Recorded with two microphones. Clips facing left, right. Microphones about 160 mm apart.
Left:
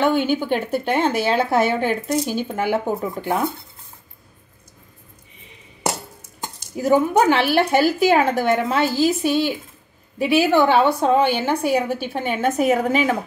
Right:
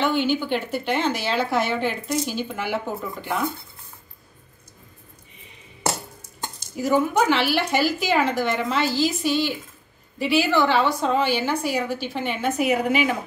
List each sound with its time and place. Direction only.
0.0 s a woman's voice: 45° left (ahead or behind)
6.9 s a woman's voice: 50° left (ahead or behind)